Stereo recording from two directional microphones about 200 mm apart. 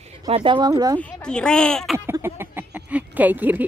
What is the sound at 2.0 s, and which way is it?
Speech, 10° right (ahead or behind).